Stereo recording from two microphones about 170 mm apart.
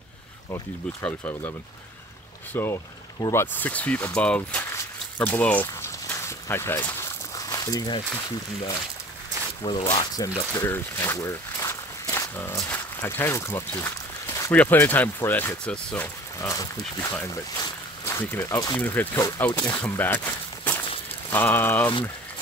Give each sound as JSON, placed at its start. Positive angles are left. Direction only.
{"t": 1.0, "sound": "speech", "side_deg": 10}
{"t": 2.5, "sound": "speech", "side_deg": 15}
{"t": 4.5, "sound": "a sound", "side_deg": 10}
{"t": 9.6, "sound": "speech", "side_deg": 30}
{"t": 10.5, "sound": "speech", "side_deg": 15}
{"t": 16.3, "sound": "speech", "side_deg": 20}
{"t": 19.8, "sound": "walk", "side_deg": 10}
{"t": 21.3, "sound": "speech", "side_deg": 10}